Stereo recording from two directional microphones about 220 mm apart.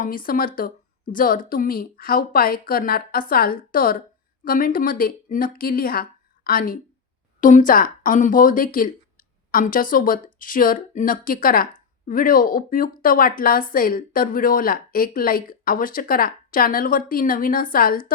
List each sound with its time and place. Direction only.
0.0 s speech: 40° left (ahead or behind)